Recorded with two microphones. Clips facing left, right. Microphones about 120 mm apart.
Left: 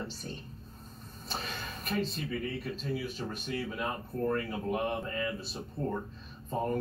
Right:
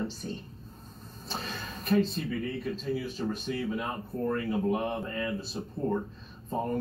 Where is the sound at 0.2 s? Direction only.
Centre (ahead or behind).